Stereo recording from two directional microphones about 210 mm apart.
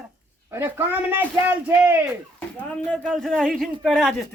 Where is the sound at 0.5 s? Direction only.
10° right (ahead or behind).